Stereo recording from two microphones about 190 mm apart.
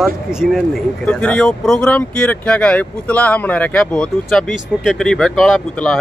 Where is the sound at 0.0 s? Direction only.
5° right (ahead or behind).